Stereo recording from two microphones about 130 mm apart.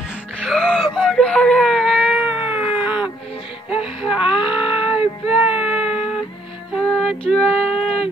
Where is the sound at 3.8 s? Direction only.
45° left (ahead or behind).